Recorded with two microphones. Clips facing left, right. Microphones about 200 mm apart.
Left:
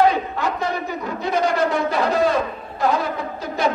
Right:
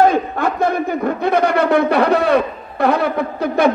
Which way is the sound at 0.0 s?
50° right (ahead or behind).